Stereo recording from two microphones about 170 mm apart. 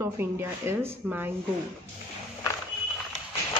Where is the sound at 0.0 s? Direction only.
15° right (ahead or behind).